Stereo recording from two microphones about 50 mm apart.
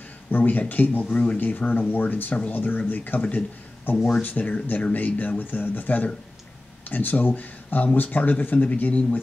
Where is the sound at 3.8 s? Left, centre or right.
Left.